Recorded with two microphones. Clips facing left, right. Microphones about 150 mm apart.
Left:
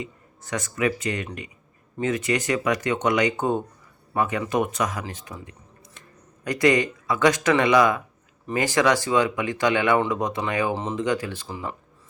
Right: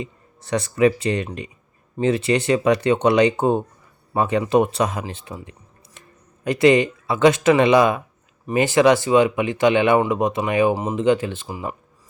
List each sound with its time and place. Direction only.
0.5 s speech: 30° right (ahead or behind)
5.2 s a sound: 25° right (ahead or behind)
6.4 s speech: 25° right (ahead or behind)